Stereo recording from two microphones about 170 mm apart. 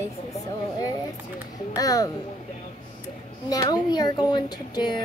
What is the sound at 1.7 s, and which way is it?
Speech, 20° left (ahead or behind).